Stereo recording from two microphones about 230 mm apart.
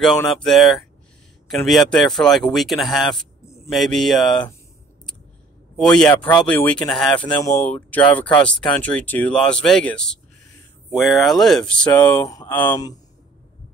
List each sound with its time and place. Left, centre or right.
0.0 s speech: centre
3.7 s speech: centre
5.8 s speech: centre